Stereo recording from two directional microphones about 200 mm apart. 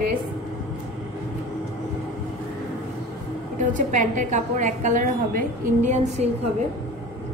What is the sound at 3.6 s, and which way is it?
A woman's voice, 40° right (ahead or behind).